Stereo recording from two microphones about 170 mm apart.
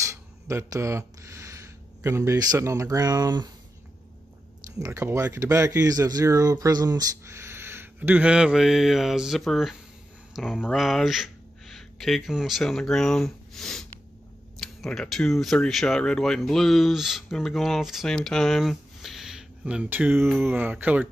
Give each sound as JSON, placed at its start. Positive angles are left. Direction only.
{"t": 0.1, "sound": "speech", "side_deg": -15}
{"t": 4.7, "sound": "speech", "side_deg": -20}